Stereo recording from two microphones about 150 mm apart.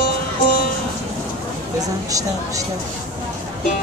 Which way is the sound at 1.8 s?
25° right (ahead or behind).